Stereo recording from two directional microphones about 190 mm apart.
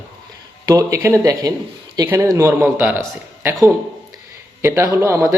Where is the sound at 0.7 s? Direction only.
20° right (ahead or behind).